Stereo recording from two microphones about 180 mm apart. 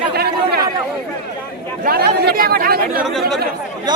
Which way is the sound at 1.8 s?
55° right (ahead or behind).